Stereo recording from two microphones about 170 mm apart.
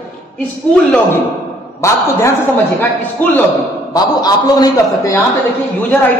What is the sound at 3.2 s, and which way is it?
Speech, 10° left (ahead or behind).